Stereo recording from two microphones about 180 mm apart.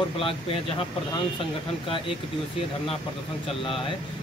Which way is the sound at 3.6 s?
30° left (ahead or behind).